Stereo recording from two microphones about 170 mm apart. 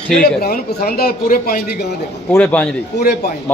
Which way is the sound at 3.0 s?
65° left (ahead or behind).